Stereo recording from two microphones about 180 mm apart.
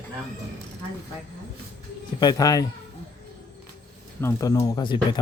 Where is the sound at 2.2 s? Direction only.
20° left (ahead or behind).